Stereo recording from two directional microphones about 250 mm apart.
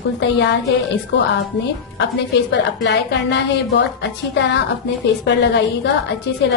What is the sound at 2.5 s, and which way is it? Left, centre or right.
A woman's voice, left.